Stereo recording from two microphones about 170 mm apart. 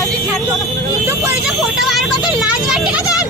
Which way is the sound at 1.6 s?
Centre (ahead or behind).